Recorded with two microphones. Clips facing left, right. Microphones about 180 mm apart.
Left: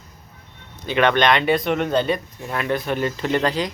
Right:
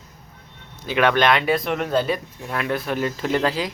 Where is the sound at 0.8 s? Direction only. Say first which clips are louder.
Left 1 dB; 5° right (ahead or behind).